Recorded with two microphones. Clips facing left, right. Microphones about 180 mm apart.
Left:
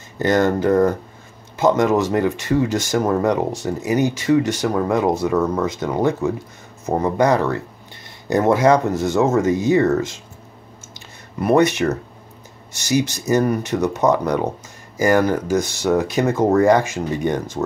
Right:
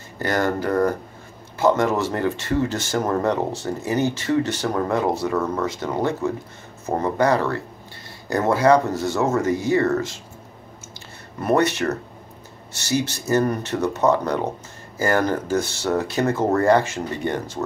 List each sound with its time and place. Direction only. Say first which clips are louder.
0.2 s speech: left 5 dB; 20° left (ahead or behind)
11.4 s speech: left 4 dB; 15° left (ahead or behind)